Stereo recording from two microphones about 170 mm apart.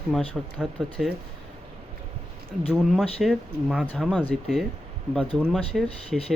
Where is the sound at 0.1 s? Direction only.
Centre (ahead or behind).